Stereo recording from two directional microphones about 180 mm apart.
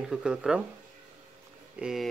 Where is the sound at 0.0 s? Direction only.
5° right (ahead or behind).